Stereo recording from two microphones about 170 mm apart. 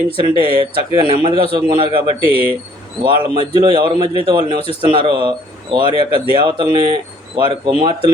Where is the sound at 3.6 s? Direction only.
30° right (ahead or behind).